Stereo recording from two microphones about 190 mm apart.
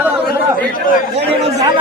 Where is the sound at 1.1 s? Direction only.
35° right (ahead or behind).